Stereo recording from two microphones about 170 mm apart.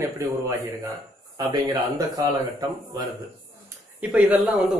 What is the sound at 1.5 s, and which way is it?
Speech, 25° right (ahead or behind).